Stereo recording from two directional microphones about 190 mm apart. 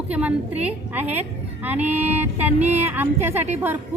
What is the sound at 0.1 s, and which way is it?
A woman's voice, 5° right (ahead or behind).